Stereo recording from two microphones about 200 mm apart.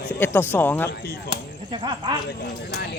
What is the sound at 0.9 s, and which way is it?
Speech, 55° left (ahead or behind).